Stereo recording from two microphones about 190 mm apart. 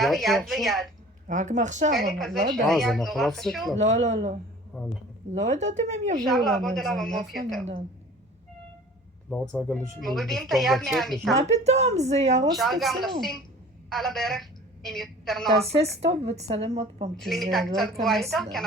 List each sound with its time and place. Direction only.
0.0 s speech: centre (ahead or behind)
1.3 s speech: 40° right (ahead or behind)
1.9 s speech: centre (ahead or behind)
3.8 s speech: 35° right (ahead or behind)
4.7 s speech: 5° left (ahead or behind)
5.3 s speech: 35° right (ahead or behind)
6.2 s speech: centre (ahead or behind)
7.6 s speech: 35° right (ahead or behind)
9.3 s speech: 5° left (ahead or behind)
11.3 s speech: 35° right (ahead or behind)
12.5 s a woman's voice: centre (ahead or behind)
16.2 s speech: 35° right (ahead or behind)
17.2 s speech: centre (ahead or behind)